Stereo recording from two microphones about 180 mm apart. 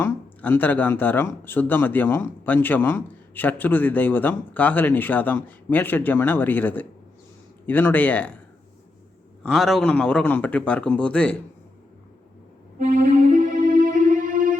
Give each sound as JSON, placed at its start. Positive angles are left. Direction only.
{"t": 0.0, "sound": "speech", "side_deg": 10}
{"t": 9.4, "sound": "speech", "side_deg": 0}
{"t": 12.8, "sound": "music", "side_deg": -50}